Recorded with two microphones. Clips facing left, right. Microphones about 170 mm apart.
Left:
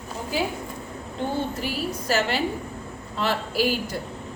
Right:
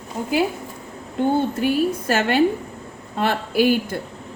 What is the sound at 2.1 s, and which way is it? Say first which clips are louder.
A woman's voice: right 4 dB; 55° right (ahead or behind).